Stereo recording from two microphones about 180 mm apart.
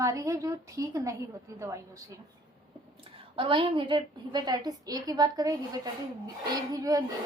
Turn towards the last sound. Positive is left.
turn(degrees=-20)  # may be behind; listen again after turning